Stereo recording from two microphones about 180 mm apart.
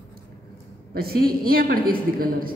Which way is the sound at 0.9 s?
55° right (ahead or behind).